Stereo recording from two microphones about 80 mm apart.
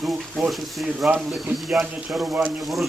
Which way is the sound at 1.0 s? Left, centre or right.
Right.